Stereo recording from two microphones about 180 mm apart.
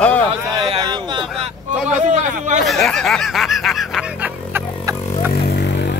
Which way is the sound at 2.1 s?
40° right (ahead or behind).